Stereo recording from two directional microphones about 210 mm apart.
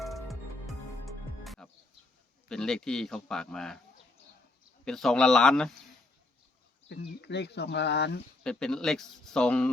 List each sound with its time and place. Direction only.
0.0 s music: centre (ahead or behind)
2.5 s a man's voice: 5° left (ahead or behind)
4.9 s a man's voice: centre (ahead or behind)
6.8 s speech: 55° left (ahead or behind)
8.4 s a man's voice: 5° left (ahead or behind)